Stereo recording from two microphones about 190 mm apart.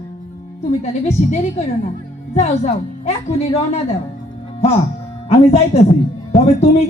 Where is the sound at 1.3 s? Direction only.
35° left (ahead or behind).